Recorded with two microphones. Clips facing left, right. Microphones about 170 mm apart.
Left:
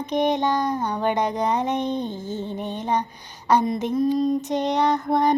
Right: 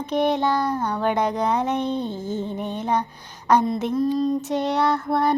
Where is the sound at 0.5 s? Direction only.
10° left (ahead or behind).